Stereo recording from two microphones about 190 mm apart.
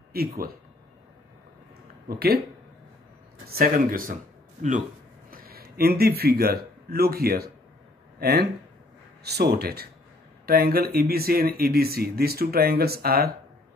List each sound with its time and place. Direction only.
0.1 s speech: 50° right (ahead or behind)
2.0 s speech: 55° right (ahead or behind)
3.4 s a man's voice: 50° right (ahead or behind)